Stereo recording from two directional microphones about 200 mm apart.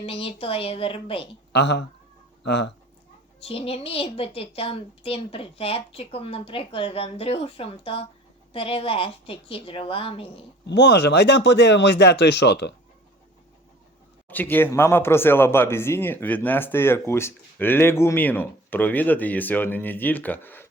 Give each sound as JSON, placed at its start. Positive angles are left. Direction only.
{"t": 0.0, "sound": "a woman's voice", "side_deg": 30}
{"t": 1.5, "sound": "speech", "side_deg": 60}
{"t": 3.4, "sound": "a woman's voice", "side_deg": 30}
{"t": 10.7, "sound": "speech", "side_deg": 55}
{"t": 14.3, "sound": "speech", "side_deg": 10}